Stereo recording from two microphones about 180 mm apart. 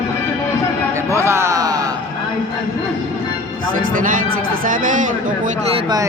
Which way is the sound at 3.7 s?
50° right (ahead or behind).